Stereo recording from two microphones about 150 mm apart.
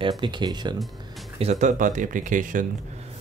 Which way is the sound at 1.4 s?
55° right (ahead or behind).